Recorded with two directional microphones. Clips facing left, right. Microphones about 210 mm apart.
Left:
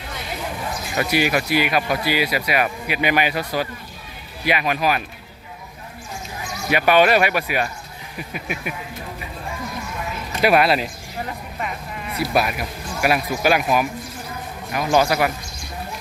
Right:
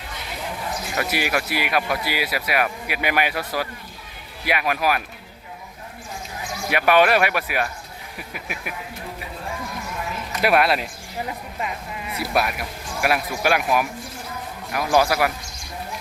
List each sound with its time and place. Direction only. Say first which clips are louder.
0.9 s speech: left 5 dB; centre (ahead or behind)
6.7 s speech: left 2 dB; centre (ahead or behind)
10.4 s speech: left 2 dB; centre (ahead or behind)
12.1 s speech: left 3 dB; centre (ahead or behind)